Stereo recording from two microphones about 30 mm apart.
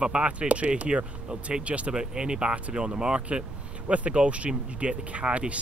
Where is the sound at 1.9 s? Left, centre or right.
Right.